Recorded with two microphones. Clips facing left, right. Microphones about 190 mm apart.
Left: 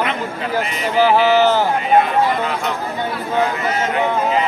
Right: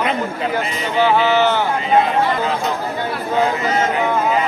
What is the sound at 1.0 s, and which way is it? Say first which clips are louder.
Speech: left 2 dB; 35° left (ahead or behind).